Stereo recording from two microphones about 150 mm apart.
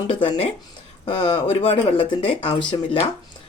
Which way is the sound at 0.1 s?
40° left (ahead or behind).